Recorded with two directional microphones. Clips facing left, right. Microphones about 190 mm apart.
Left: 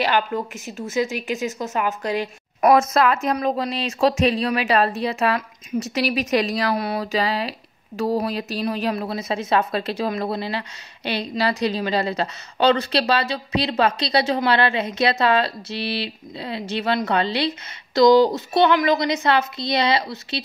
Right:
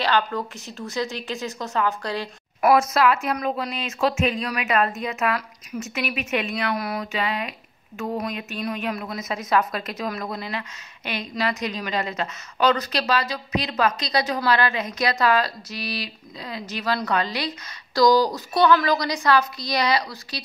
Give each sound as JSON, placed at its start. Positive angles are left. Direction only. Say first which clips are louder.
{"t": 0.0, "sound": "speech", "louder": "left 2 dB", "side_deg": 20}
{"t": 2.9, "sound": "a woman's voice", "louder": "left 2 dB", "side_deg": 40}